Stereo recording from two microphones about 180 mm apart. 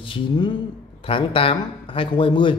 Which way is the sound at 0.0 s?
25° left (ahead or behind).